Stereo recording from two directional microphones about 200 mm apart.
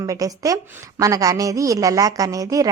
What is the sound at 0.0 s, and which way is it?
A woman's voice, 15° right (ahead or behind).